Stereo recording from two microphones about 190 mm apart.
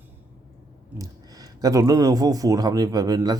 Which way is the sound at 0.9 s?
20° right (ahead or behind).